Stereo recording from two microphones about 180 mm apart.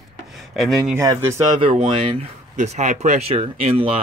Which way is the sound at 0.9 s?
15° right (ahead or behind).